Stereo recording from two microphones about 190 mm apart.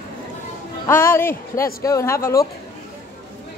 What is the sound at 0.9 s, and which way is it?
Speech, 10° left (ahead or behind).